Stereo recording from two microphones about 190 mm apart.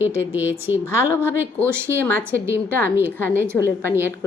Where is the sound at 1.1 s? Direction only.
10° left (ahead or behind).